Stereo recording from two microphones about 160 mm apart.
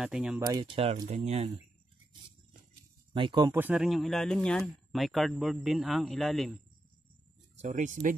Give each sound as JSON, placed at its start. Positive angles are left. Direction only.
{"t": 0.0, "sound": "speech", "side_deg": -5}
{"t": 0.7, "sound": "speech", "side_deg": -35}
{"t": 3.2, "sound": "speech", "side_deg": -30}
{"t": 3.4, "sound": "speech", "side_deg": -10}
{"t": 3.8, "sound": "speech", "side_deg": 0}
{"t": 7.5, "sound": "speech", "side_deg": -50}